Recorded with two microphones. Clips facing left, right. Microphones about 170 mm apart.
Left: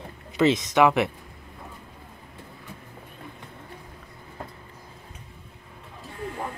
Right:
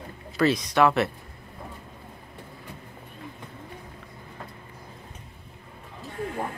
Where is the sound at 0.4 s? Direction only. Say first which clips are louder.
Left 2 dB; 20° left (ahead or behind).